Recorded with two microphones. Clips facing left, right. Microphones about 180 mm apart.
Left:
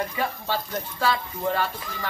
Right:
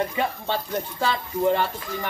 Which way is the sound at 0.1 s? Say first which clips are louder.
Right 2 dB; 20° right (ahead or behind).